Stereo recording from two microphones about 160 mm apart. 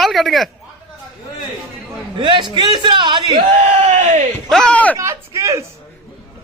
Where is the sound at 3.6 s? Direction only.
45° right (ahead or behind).